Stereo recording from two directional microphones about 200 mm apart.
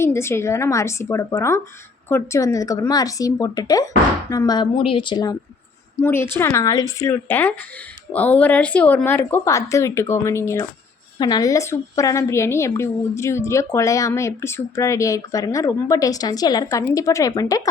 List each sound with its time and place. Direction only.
0.0 s a woman's voice: 10° left (ahead or behind)
6.0 s a woman's voice: 10° left (ahead or behind)